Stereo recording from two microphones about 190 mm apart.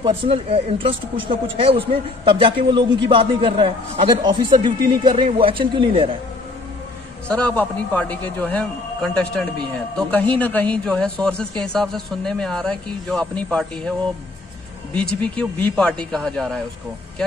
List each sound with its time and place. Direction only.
0.0 s speech: 30° right (ahead or behind)
7.2 s a man's voice: 5° left (ahead or behind)
15.0 s speech: 5° left (ahead or behind)